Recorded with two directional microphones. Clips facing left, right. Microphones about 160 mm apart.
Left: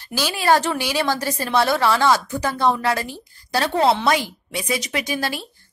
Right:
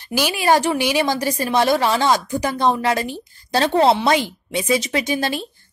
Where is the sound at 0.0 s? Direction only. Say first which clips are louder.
Right 3 dB; 15° right (ahead or behind).